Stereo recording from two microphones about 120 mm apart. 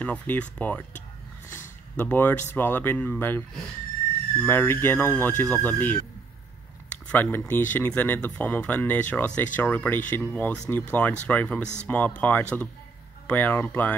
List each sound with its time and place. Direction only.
0.0 s speech: 10° left (ahead or behind)
1.5 s a sound: 15° left (ahead or behind)
2.5 s speech: 15° left (ahead or behind)
7.1 s speech: 15° left (ahead or behind)